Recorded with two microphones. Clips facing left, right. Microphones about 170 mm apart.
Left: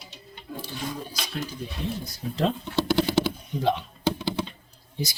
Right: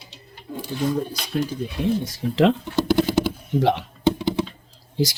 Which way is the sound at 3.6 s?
70° right (ahead or behind).